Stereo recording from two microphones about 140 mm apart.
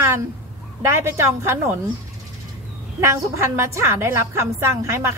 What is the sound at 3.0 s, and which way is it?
A woman's voice, 20° right (ahead or behind).